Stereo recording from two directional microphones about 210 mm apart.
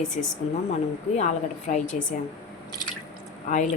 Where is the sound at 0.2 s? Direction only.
35° left (ahead or behind).